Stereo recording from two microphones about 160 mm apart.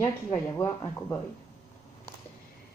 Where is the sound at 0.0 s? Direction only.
10° left (ahead or behind).